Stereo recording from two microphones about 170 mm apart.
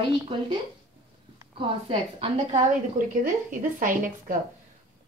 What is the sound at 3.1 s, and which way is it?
A woman's voice, 50° right (ahead or behind).